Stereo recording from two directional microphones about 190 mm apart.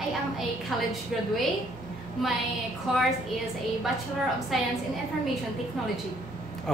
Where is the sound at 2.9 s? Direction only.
Centre (ahead or behind).